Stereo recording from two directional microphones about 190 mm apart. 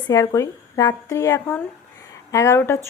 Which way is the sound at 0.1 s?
15° left (ahead or behind).